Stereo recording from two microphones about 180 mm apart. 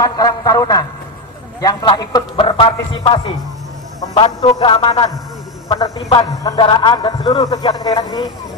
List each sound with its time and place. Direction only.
0.0 s a man's voice: 20° left (ahead or behind)
4.4 s a man's voice: 25° left (ahead or behind)